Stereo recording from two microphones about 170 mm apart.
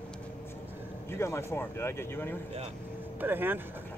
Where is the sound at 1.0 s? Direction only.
15° left (ahead or behind).